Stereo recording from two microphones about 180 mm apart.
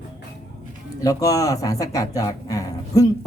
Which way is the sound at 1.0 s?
20° left (ahead or behind).